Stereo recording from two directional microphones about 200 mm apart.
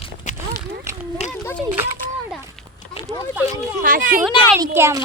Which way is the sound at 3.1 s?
15° right (ahead or behind).